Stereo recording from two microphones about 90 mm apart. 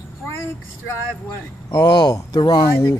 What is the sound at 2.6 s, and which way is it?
Speech, 30° left (ahead or behind).